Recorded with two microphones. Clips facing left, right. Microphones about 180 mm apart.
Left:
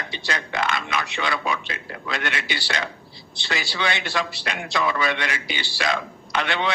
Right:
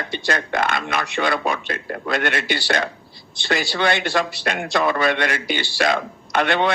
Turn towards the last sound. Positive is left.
turn(degrees=-55)  # may be behind; listen again after turning